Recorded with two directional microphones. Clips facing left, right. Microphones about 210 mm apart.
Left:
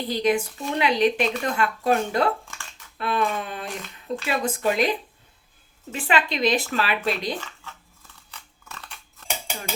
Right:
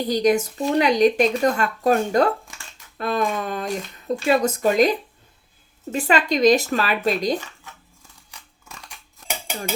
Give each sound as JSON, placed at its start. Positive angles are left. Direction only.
{"t": 0.1, "sound": "a woman's voice", "side_deg": -40}
{"t": 7.4, "sound": "chewing", "side_deg": -15}